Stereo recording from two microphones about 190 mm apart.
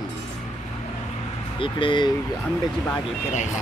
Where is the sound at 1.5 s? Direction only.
25° left (ahead or behind).